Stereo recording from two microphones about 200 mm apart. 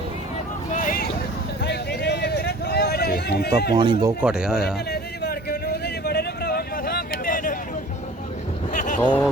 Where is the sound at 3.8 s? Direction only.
25° right (ahead or behind).